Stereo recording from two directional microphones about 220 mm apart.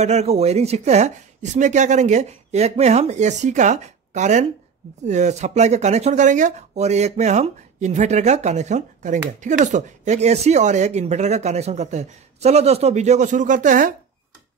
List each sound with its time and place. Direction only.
0.0 s speech: 30° right (ahead or behind)